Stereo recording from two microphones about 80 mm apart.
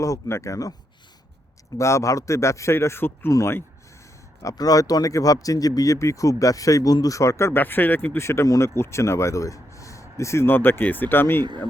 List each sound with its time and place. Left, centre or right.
0.0 s speech: left
1.8 s speech: left
4.4 s speech: left
7.6 s speech: left
8.2 s speech: left